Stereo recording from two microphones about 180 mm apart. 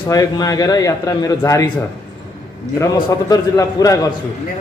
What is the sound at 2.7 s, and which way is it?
A man's voice, 20° left (ahead or behind).